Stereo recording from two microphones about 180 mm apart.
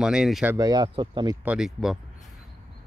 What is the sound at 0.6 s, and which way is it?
Speech, 25° right (ahead or behind).